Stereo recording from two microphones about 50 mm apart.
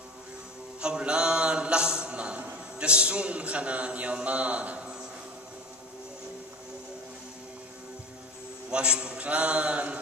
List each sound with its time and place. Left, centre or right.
0.7 s mantra: centre
8.6 s a man's voice: centre